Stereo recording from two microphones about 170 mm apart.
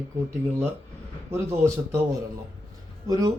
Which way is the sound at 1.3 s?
15° right (ahead or behind).